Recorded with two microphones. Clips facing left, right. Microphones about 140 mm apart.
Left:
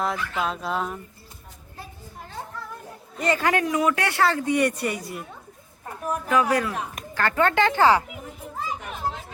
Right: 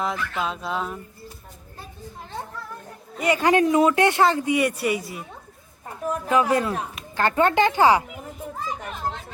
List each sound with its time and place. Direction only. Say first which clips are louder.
0.0 s speech: even; centre (ahead or behind)
3.2 s speech: right 4 dB; 15° right (ahead or behind)
4.5 s speech: right 1 dB; 5° right (ahead or behind)
6.2 s speech: right 2 dB; 25° right (ahead or behind)